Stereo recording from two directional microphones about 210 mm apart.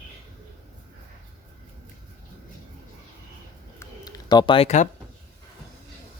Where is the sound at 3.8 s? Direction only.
15° left (ahead or behind); by 4.9 s 30° left (ahead or behind).